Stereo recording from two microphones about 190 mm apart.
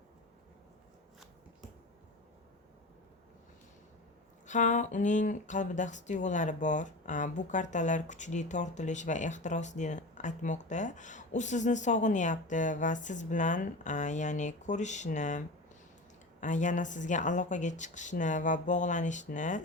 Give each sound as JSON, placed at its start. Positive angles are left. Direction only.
{"t": 4.4, "sound": "speech", "side_deg": 40}